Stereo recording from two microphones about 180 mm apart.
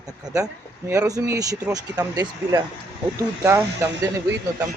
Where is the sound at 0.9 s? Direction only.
20° right (ahead or behind).